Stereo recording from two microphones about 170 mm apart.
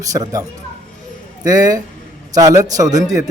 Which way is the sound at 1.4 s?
20° right (ahead or behind).